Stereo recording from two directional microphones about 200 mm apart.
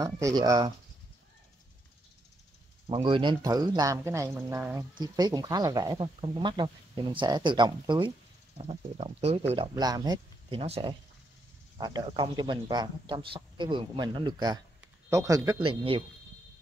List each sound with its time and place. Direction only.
0.0 s speech: 20° right (ahead or behind)
2.9 s speech: 25° right (ahead or behind)